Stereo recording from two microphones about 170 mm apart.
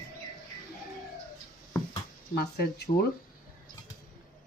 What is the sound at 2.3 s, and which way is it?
Speech, 70° left (ahead or behind).